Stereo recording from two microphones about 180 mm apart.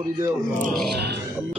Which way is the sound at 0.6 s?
55° right (ahead or behind).